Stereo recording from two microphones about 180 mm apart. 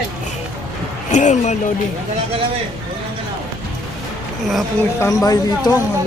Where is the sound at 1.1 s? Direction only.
40° left (ahead or behind).